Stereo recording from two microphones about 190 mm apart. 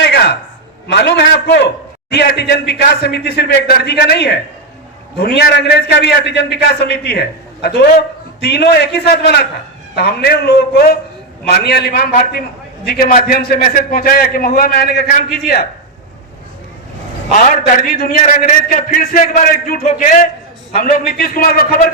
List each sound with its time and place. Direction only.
0.0 s a sound: 65° left (ahead or behind)
0.9 s a man's voice: 65° left (ahead or behind)
17.7 s a man's voice: 45° left (ahead or behind)